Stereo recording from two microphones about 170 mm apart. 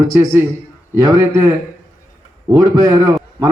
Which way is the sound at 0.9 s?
20° right (ahead or behind).